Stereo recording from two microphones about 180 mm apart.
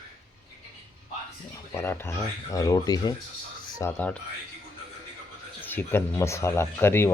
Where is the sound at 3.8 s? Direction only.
10° left (ahead or behind).